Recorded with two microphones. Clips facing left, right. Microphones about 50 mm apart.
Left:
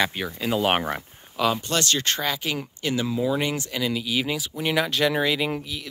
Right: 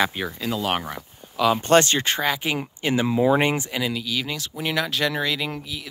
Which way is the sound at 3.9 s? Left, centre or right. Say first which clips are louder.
Left 2 dB; centre.